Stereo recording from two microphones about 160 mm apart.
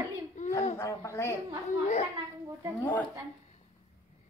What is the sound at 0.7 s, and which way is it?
Speech, 20° left (ahead or behind).